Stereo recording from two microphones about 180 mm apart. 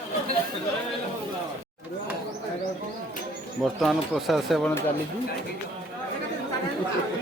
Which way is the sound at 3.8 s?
Centre (ahead or behind).